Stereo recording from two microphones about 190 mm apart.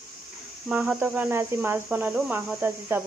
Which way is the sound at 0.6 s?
10° right (ahead or behind).